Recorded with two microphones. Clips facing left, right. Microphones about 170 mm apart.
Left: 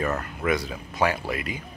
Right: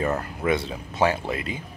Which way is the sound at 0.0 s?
25° right (ahead or behind).